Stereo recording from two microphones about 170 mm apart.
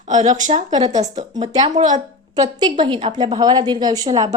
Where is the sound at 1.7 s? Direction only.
45° right (ahead or behind).